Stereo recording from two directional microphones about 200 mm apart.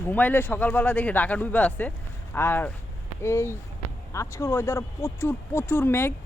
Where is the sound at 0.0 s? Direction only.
10° left (ahead or behind).